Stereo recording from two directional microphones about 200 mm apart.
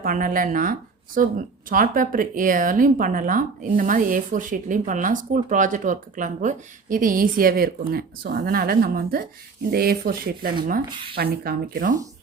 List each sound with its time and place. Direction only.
0.0 s speech: 45° right (ahead or behind)